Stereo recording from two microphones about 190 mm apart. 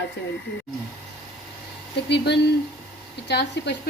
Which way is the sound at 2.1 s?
60° left (ahead or behind).